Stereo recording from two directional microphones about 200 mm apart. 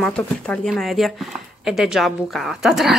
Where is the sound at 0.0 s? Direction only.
5° left (ahead or behind).